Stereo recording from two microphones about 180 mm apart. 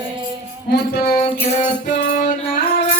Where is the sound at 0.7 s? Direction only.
60° left (ahead or behind).